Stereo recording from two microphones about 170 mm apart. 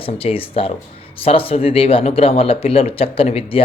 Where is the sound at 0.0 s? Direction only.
35° left (ahead or behind).